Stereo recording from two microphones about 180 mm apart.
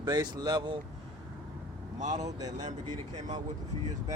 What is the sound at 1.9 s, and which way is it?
Speech, 40° right (ahead or behind).